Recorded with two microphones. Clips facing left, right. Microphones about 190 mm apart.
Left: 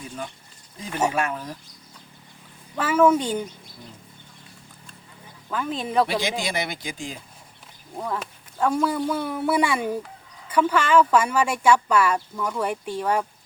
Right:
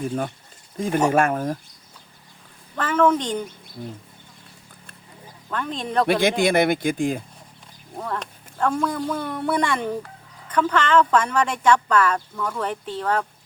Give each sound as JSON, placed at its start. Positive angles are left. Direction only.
{"t": 0.0, "sound": "speech", "side_deg": -50}
{"t": 2.7, "sound": "speech", "side_deg": 10}
{"t": 5.5, "sound": "speech", "side_deg": 5}
{"t": 6.1, "sound": "speech", "side_deg": -55}
{"t": 7.9, "sound": "speech", "side_deg": 5}